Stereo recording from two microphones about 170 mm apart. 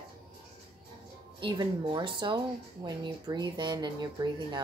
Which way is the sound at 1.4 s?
25° right (ahead or behind).